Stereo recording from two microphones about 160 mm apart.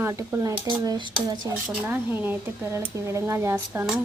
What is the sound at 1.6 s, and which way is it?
Speech, 5° right (ahead or behind).